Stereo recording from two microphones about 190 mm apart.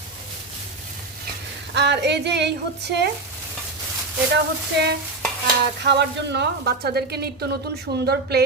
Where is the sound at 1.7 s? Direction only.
65° right (ahead or behind).